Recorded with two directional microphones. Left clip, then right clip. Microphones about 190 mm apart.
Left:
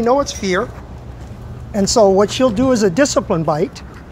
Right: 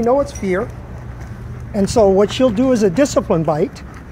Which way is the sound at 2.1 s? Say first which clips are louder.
Even; centre (ahead or behind).